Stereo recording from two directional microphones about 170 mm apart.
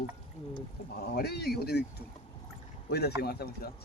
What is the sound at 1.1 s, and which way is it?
Speech, 70° left (ahead or behind).